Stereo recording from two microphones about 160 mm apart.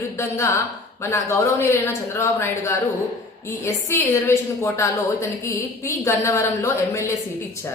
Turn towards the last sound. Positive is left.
turn(degrees=20)  # may be behind; listen again after turning